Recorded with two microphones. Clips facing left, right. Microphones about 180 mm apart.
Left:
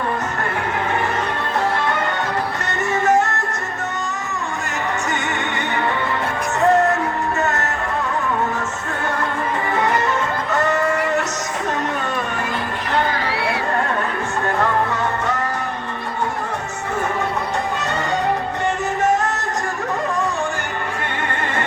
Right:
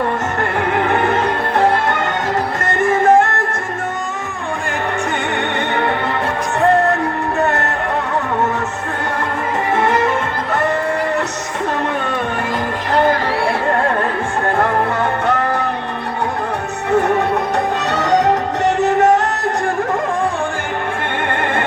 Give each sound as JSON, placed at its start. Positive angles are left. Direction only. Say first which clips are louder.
{"t": 0.8, "sound": "music", "louder": "right 7 dB", "side_deg": -65}
{"t": 2.6, "sound": "music", "louder": "right 6 dB", "side_deg": -50}
{"t": 7.3, "sound": "music", "louder": "right 7 dB", "side_deg": -60}
{"t": 9.7, "sound": "music", "louder": "right 4 dB", "side_deg": -50}
{"t": 13.1, "sound": "music", "louder": "right 6 dB", "side_deg": -45}
{"t": 14.6, "sound": "music", "louder": "right 3 dB", "side_deg": -60}
{"t": 17.7, "sound": "music", "louder": "right 6 dB", "side_deg": -70}